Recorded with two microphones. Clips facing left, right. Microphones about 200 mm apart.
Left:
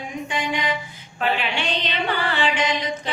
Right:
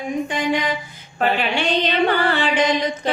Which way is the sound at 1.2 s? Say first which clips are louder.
Right 4 dB; 45° right (ahead or behind).